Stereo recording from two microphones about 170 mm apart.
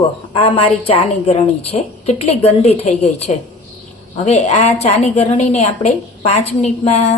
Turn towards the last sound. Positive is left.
turn(degrees=40)  # may be behind; listen again after turning